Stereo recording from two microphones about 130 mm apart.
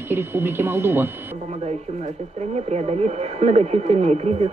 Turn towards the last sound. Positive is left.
turn(degrees=-55)  # may be behind; listen again after turning